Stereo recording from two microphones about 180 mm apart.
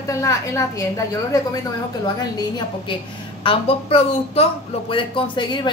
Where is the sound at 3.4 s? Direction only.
30° left (ahead or behind).